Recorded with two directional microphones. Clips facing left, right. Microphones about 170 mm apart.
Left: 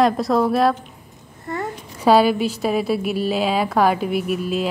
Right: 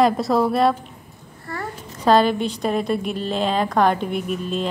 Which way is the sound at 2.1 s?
5° left (ahead or behind).